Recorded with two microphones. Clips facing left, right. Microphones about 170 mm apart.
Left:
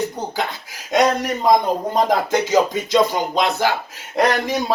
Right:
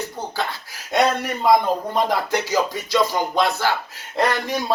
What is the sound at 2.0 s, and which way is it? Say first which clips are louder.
Speech: left 5 dB; 45° left (ahead or behind).